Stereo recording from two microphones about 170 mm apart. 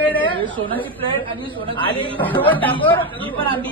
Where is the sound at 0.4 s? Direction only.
30° right (ahead or behind).